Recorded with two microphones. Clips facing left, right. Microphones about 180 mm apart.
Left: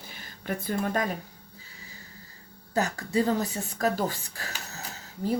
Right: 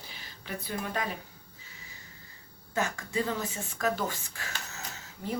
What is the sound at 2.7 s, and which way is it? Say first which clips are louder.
A woman's voice: left 4 dB; 35° left (ahead or behind).